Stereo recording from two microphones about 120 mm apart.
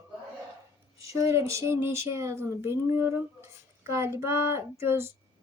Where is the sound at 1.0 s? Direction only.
25° right (ahead or behind).